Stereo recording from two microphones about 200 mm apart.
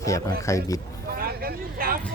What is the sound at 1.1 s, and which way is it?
Speech, 50° right (ahead or behind).